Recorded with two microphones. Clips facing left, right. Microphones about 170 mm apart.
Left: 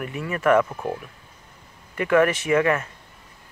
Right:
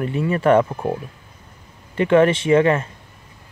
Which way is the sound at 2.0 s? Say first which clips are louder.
Right 4 dB; 25° right (ahead or behind).